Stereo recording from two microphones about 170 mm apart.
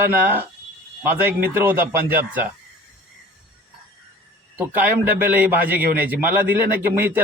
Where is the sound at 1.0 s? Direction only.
10° right (ahead or behind).